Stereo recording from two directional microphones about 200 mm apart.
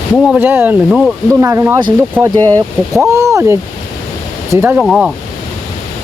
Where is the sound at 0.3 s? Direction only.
10° right (ahead or behind).